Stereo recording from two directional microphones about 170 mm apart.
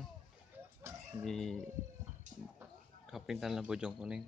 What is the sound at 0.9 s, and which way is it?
Chicken, 15° right (ahead or behind).